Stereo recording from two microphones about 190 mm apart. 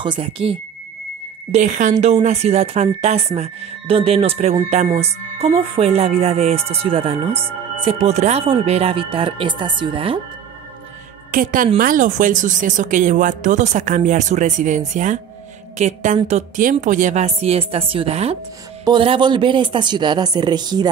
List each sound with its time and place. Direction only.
0.0 s speech: 25° right (ahead or behind)
11.3 s speech: 45° right (ahead or behind)
15.8 s speech: 40° right (ahead or behind); by 20.9 s 20° right (ahead or behind)